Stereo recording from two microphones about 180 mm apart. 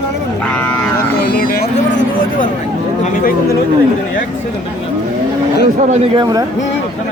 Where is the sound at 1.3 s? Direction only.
55° left (ahead or behind).